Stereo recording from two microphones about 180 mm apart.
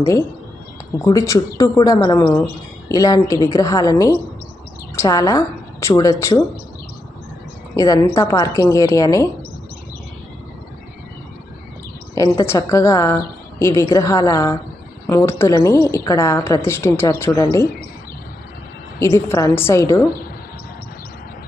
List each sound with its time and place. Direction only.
0.9 s a woman's voice: 20° left (ahead or behind)
7.7 s a woman's voice: 20° left (ahead or behind)
12.2 s a woman's voice: 20° left (ahead or behind)
18.9 s a woman's voice: 15° left (ahead or behind)